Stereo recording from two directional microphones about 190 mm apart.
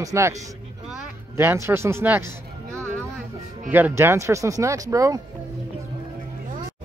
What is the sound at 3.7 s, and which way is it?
A man's voice, 10° right (ahead or behind).